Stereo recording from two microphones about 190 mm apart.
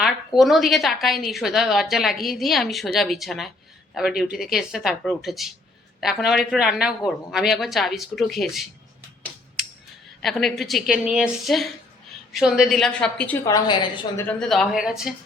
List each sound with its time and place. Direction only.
0.3 s a woman's voice: centre (ahead or behind)
10.2 s a woman's voice: centre (ahead or behind)
13.4 s a woman's voice: 20° left (ahead or behind)
14.2 s a woman's voice: 5° left (ahead or behind)